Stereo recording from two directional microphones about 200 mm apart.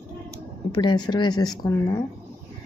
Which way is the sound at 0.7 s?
20° left (ahead or behind).